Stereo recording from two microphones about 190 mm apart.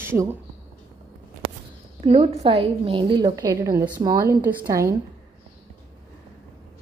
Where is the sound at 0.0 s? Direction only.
10° right (ahead or behind).